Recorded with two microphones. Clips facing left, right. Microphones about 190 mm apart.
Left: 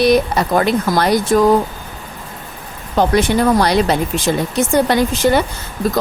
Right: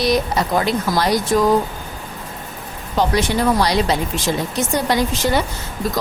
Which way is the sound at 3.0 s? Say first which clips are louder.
Left 4 dB; 55° left (ahead or behind).